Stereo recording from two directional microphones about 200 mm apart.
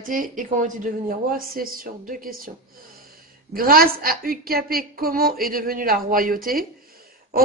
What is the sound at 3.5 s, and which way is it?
Speech, 45° right (ahead or behind).